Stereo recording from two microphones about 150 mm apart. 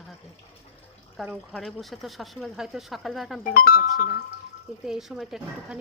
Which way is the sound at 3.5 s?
70° left (ahead or behind).